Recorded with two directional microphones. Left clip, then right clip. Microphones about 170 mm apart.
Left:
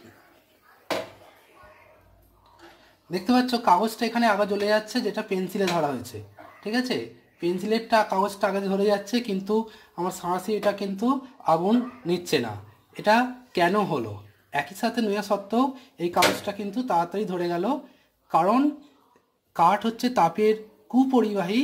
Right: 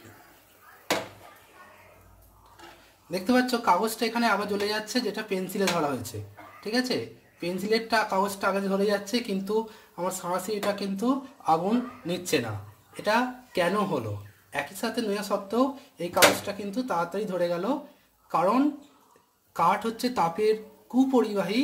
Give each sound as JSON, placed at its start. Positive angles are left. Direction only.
{"t": 3.1, "sound": "speech", "side_deg": 35}